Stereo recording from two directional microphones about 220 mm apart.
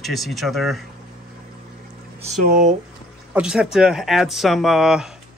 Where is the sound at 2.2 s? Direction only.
35° right (ahead or behind).